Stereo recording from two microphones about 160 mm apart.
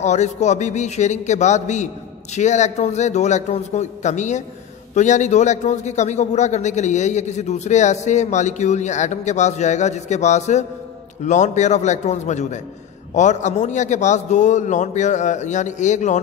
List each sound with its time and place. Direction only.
0.0 s a man's voice: 45° left (ahead or behind)